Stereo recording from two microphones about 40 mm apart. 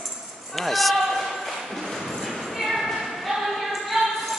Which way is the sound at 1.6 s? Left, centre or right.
Centre.